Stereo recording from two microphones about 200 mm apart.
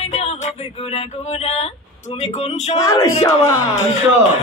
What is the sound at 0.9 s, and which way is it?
Male singing, 30° left (ahead or behind).